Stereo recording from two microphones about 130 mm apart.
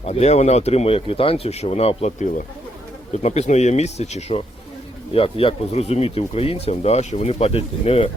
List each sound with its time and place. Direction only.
0.0 s speech: 55° left (ahead or behind)
5.1 s speech: 45° left (ahead or behind)